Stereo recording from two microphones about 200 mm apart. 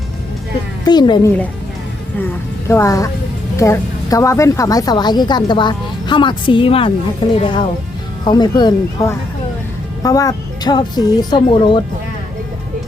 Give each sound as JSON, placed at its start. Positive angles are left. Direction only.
{"t": 0.9, "sound": "a woman's voice", "side_deg": 20}
{"t": 2.6, "sound": "a woman's voice", "side_deg": 15}